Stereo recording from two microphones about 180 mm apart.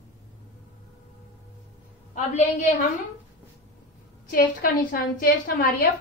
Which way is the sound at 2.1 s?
45° left (ahead or behind).